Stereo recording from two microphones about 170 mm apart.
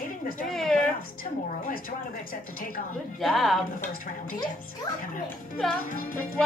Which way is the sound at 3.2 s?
Centre (ahead or behind).